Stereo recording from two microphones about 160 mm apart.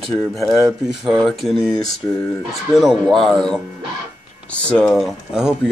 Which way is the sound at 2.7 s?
Centre (ahead or behind).